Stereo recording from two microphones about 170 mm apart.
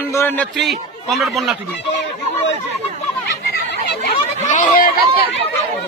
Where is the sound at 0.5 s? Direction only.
Centre (ahead or behind).